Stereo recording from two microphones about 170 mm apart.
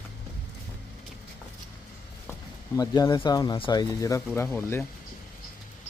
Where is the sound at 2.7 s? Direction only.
25° left (ahead or behind).